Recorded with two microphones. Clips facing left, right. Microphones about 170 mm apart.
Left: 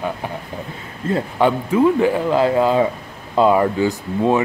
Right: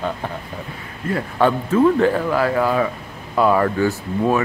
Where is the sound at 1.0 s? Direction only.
25° left (ahead or behind).